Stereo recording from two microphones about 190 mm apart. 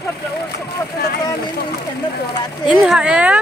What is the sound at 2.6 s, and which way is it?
Speech, 5° right (ahead or behind).